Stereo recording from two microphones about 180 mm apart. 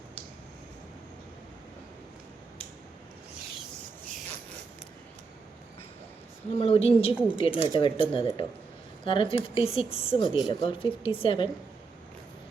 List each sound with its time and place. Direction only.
6.6 s a woman's voice: 35° left (ahead or behind)
7.1 s speech: 5° right (ahead or behind)
7.3 s a woman's voice: 30° left (ahead or behind)